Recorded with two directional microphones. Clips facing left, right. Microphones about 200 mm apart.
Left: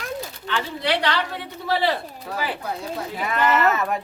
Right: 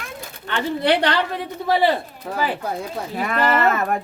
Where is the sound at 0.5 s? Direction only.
50° right (ahead or behind).